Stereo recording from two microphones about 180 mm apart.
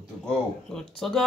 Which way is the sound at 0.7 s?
Centre (ahead or behind).